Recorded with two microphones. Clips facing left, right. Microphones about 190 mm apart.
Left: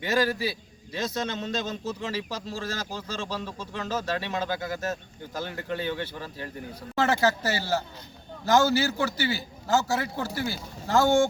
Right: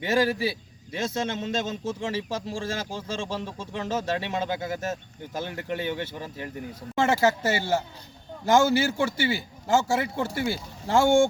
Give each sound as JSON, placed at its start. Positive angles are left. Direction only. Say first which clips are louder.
{"t": 0.0, "sound": "a man's voice", "louder": "right 2 dB", "side_deg": -25}